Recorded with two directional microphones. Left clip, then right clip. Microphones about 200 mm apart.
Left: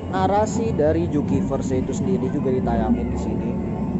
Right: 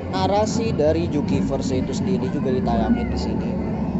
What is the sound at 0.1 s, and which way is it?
Speech, 20° left (ahead or behind).